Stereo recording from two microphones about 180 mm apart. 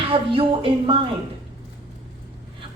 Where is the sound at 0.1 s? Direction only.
30° right (ahead or behind).